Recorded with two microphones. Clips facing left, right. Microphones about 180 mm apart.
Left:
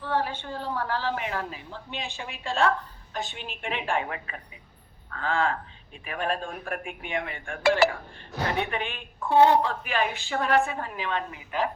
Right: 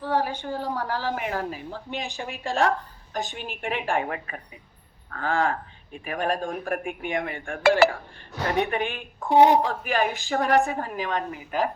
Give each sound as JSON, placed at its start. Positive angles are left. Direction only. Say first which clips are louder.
{"t": 0.0, "sound": "a sound", "louder": "right 3 dB", "side_deg": -40}
{"t": 0.6, "sound": "a woman's voice", "louder": "left 1 dB", "side_deg": -40}
{"t": 9.3, "sound": "a woman's voice", "louder": "right 2 dB", "side_deg": -15}
{"t": 9.6, "sound": "speech", "louder": "right 2 dB", "side_deg": -40}